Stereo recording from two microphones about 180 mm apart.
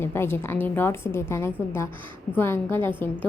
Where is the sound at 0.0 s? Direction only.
15° left (ahead or behind).